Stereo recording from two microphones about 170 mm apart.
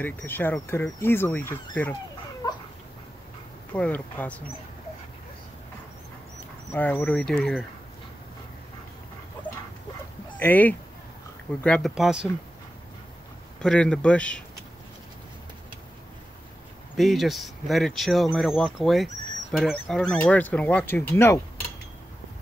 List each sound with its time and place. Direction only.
0.0 s speech: 10° left (ahead or behind)
3.7 s speech: 10° left (ahead or behind)
6.7 s speech: 10° left (ahead or behind)
10.4 s speech: 10° left (ahead or behind)
11.9 s speech: 5° right (ahead or behind)
13.6 s speech: 5° left (ahead or behind)
16.9 s speech: centre (ahead or behind); by 21.4 s 15° left (ahead or behind)